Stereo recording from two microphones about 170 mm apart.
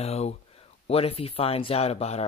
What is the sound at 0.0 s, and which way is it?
Speech, 40° left (ahead or behind).